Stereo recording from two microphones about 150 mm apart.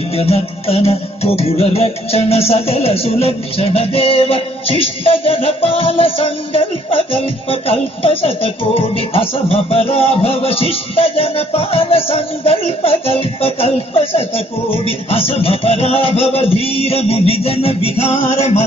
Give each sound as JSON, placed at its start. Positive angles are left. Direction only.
{"t": 0.1, "sound": "music", "side_deg": 40}